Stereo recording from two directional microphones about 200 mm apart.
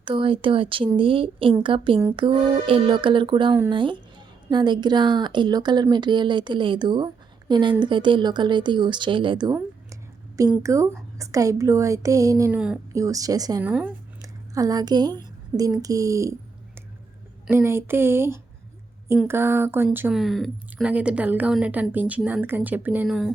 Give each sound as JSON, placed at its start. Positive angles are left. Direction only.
{"t": 0.0, "sound": "speech", "side_deg": -25}
{"t": 9.6, "sound": "a sound", "side_deg": -15}
{"t": 10.5, "sound": "speech", "side_deg": -15}
{"t": 12.5, "sound": "a woman's voice", "side_deg": -5}
{"t": 12.9, "sound": "speech", "side_deg": -15}
{"t": 13.7, "sound": "a woman's voice", "side_deg": -10}
{"t": 17.4, "sound": "speech", "side_deg": -10}